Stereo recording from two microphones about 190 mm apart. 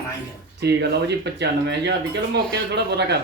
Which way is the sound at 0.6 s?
60° right (ahead or behind).